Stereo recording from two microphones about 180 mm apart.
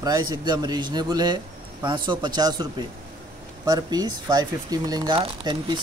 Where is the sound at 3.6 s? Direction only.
20° right (ahead or behind).